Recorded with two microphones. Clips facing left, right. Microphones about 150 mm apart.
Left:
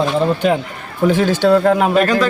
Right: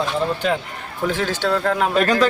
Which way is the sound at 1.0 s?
15° left (ahead or behind).